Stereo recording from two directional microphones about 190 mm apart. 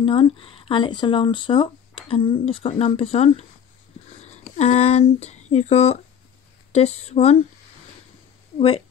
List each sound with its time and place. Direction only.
0.0 s speech: 25° left (ahead or behind)
8.5 s speech: 30° left (ahead or behind)